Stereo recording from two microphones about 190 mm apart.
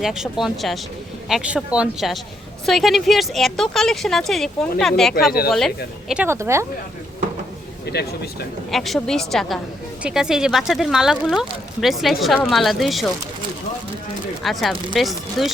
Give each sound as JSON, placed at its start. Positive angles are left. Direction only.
{"t": 0.0, "sound": "speech", "side_deg": 0}
{"t": 6.2, "sound": "speech", "side_deg": -15}
{"t": 7.9, "sound": "a sound", "side_deg": 60}
{"t": 8.7, "sound": "speech", "side_deg": 0}
{"t": 14.4, "sound": "speech", "side_deg": 0}